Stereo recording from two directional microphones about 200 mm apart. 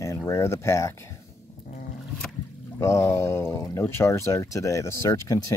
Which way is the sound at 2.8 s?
15° left (ahead or behind).